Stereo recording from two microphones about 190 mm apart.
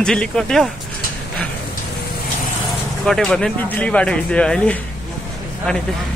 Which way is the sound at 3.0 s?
Centre (ahead or behind).